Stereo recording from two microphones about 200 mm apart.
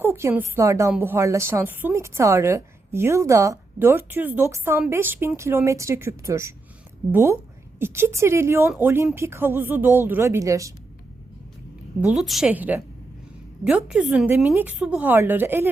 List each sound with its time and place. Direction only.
0.0 s a woman's voice: 10° right (ahead or behind)
11.9 s a woman's voice: 5° right (ahead or behind)